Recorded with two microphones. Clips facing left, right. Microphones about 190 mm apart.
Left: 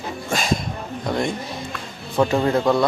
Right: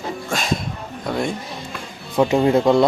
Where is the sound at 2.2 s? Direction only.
15° right (ahead or behind).